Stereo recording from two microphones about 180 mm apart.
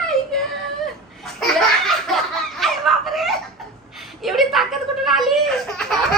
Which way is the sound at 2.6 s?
Centre (ahead or behind).